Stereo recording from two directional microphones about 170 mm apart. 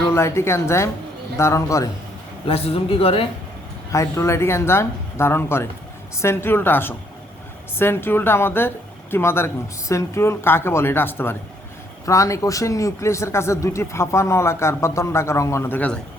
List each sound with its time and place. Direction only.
0.1 s a man's voice: 15° left (ahead or behind)
2.5 s speech: 35° left (ahead or behind)
3.9 s a man's voice: 20° left (ahead or behind)